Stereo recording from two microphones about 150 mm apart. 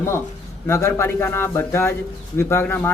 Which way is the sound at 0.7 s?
20° left (ahead or behind).